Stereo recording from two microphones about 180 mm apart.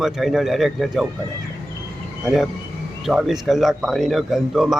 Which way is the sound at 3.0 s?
Centre (ahead or behind).